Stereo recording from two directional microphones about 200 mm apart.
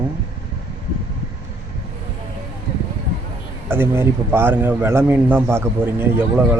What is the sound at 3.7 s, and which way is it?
A man's voice, 10° right (ahead or behind).